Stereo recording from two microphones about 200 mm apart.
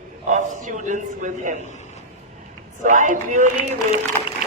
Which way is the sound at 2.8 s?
40° right (ahead or behind).